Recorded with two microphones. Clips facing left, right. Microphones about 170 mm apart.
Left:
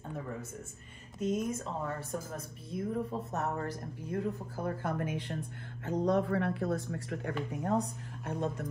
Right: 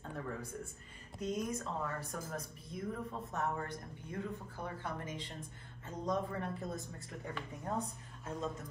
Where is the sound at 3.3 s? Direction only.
35° left (ahead or behind); by 8.6 s 70° left (ahead or behind).